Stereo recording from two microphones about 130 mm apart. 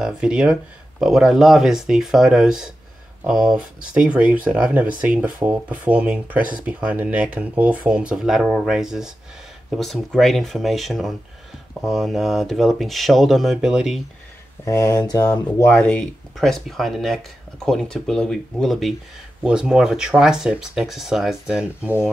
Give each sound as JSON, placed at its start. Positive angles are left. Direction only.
{"t": 0.0, "sound": "speech", "side_deg": -5}
{"t": 14.6, "sound": "speech", "side_deg": 25}
{"t": 16.3, "sound": "speech", "side_deg": 0}